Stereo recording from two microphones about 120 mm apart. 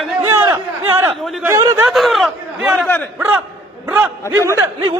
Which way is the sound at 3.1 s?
15° right (ahead or behind).